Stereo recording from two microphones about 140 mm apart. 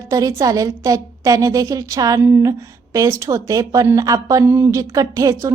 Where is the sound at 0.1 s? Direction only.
25° right (ahead or behind).